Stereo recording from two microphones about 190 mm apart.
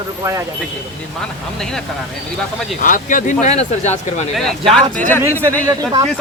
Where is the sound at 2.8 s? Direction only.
45° left (ahead or behind).